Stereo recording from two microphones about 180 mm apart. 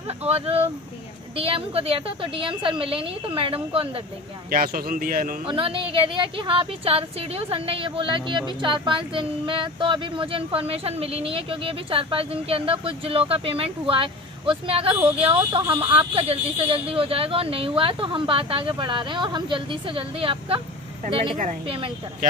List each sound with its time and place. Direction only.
0.2 s a woman's voice: 35° right (ahead or behind)
4.5 s a man's voice: 50° right (ahead or behind)
5.5 s a woman's voice: 30° right (ahead or behind)
15.6 s speech: 15° right (ahead or behind)
15.9 s speech: 30° right (ahead or behind)
21.6 s speech: 30° right (ahead or behind)